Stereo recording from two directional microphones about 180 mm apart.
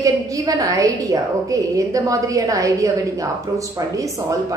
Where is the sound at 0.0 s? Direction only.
20° right (ahead or behind).